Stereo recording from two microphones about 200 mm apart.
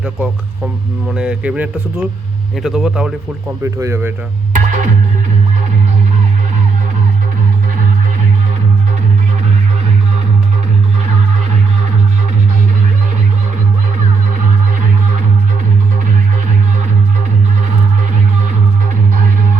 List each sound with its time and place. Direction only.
0.0 s speech: 5° right (ahead or behind)
3.6 s speech: 15° right (ahead or behind)
4.5 s music: 40° right (ahead or behind)